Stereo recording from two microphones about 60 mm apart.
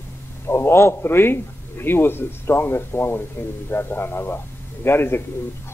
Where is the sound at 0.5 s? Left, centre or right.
Left.